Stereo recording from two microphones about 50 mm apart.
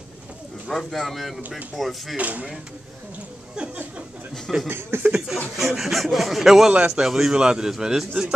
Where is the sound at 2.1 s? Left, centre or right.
Right.